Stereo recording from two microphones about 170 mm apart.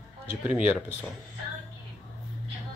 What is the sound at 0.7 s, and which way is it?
Speech, 5° right (ahead or behind).